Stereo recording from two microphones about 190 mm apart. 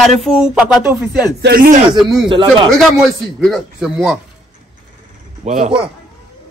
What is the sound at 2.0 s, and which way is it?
Speech, 25° right (ahead or behind).